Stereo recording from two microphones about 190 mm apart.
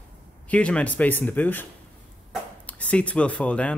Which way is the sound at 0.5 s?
5° left (ahead or behind).